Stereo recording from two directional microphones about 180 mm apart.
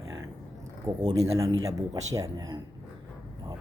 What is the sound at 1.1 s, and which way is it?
Speech, 20° right (ahead or behind).